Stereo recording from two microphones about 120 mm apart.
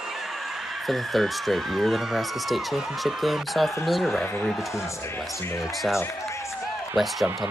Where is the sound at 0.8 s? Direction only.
Centre (ahead or behind).